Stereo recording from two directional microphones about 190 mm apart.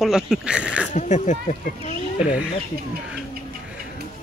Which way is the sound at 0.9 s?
40° left (ahead or behind).